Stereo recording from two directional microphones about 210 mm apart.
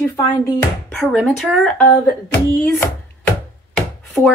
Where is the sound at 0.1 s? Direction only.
15° left (ahead or behind).